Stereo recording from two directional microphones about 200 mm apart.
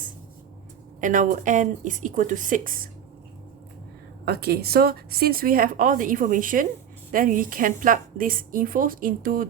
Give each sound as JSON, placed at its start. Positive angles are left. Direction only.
{"t": 1.0, "sound": "speech", "side_deg": -40}
{"t": 4.3, "sound": "speech", "side_deg": -50}